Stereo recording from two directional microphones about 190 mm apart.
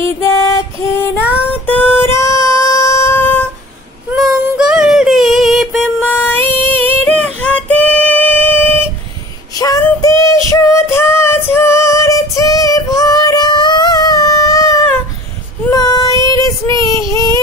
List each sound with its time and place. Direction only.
0.9 s child singing: 10° left (ahead or behind)
1.7 s a sound: 10° left (ahead or behind)
4.1 s a sound: 5° right (ahead or behind)
6.1 s music: 10° left (ahead or behind)
7.2 s female singing: 5° left (ahead or behind)
9.6 s music: 15° left (ahead or behind)
15.7 s child singing: 20° left (ahead or behind)